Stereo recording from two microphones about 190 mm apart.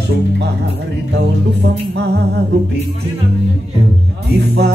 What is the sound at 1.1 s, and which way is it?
Music, 60° right (ahead or behind).